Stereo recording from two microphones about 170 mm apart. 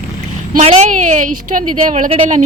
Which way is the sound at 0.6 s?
40° right (ahead or behind).